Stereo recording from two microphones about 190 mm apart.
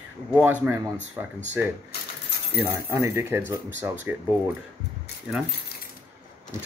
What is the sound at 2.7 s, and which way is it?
Speech, 15° right (ahead or behind).